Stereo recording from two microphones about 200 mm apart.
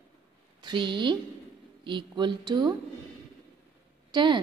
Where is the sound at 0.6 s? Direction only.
25° right (ahead or behind).